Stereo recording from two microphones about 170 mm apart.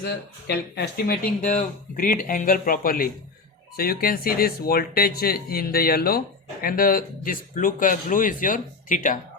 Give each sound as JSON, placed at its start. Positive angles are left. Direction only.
{"t": 0.0, "sound": "speech", "side_deg": 75}